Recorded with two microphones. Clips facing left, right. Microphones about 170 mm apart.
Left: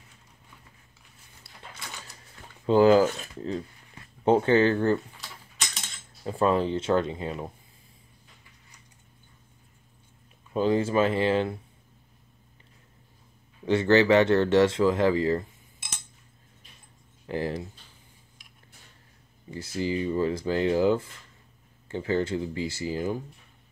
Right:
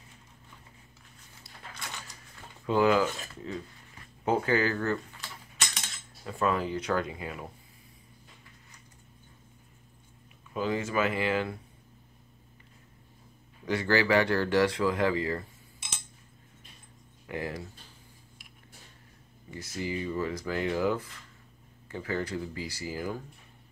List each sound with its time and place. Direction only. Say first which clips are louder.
2.6 s speech: left 6 dB; 30° left (ahead or behind)
6.2 s speech: left 5 dB; 30° left (ahead or behind)
10.5 s speech: left 6 dB; 30° left (ahead or behind)
13.7 s speech: left 6 dB; 25° left (ahead or behind)
17.3 s speech: left 5 dB; 30° left (ahead or behind)
19.5 s speech: left 5 dB; 30° left (ahead or behind)